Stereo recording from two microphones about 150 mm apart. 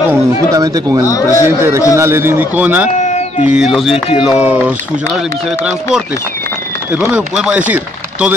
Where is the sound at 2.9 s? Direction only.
50° left (ahead or behind).